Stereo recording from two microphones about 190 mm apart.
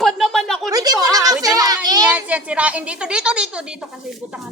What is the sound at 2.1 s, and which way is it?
A woman's voice, 5° right (ahead or behind).